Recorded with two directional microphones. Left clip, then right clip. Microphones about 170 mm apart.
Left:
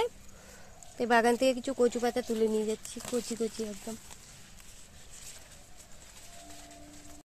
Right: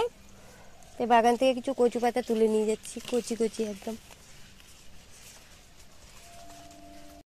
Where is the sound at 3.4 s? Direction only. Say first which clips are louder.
Right 5 dB; 45° right (ahead or behind).